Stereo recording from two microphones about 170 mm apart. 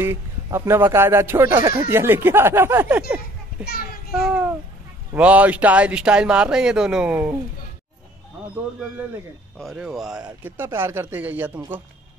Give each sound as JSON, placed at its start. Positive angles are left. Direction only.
{"t": 0.0, "sound": "speech", "side_deg": -15}
{"t": 3.6, "sound": "child singing", "side_deg": 65}
{"t": 4.1, "sound": "speech", "side_deg": -5}
{"t": 9.6, "sound": "speech", "side_deg": 0}
{"t": 10.4, "sound": "speech", "side_deg": -15}